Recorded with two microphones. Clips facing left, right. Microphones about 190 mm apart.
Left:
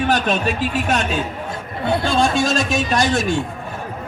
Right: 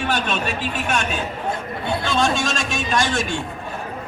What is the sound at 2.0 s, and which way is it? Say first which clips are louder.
A man's voice: left 2 dB; 35° left (ahead or behind).